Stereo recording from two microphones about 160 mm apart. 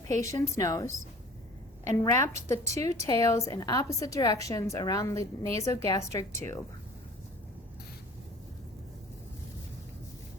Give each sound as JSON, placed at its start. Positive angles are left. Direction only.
{"t": 0.1, "sound": "a woman's voice", "side_deg": 20}
{"t": 1.9, "sound": "a woman's voice", "side_deg": 15}